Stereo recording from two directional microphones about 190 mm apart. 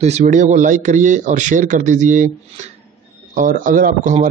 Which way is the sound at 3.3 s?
45° right (ahead or behind).